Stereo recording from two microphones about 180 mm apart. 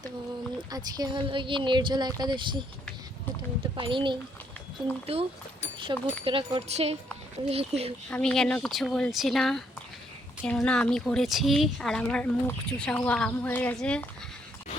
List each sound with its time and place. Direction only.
0.7 s speech: 20° right (ahead or behind)
3.8 s speech: 25° right (ahead or behind)
5.9 s speech: 20° right (ahead or behind)
8.1 s a woman's voice: 5° left (ahead or behind)